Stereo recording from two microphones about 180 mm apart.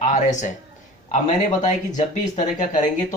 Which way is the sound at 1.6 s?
45° left (ahead or behind).